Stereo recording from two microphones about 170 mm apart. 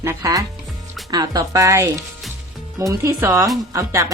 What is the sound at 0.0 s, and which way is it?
A woman's voice, 20° right (ahead or behind).